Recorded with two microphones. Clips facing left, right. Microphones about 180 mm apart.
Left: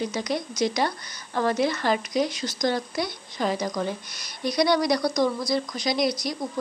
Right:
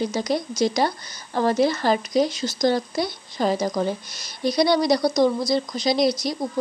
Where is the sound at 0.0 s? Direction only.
30° right (ahead or behind).